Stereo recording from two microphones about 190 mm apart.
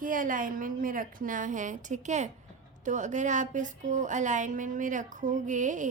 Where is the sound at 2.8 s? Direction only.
40° right (ahead or behind).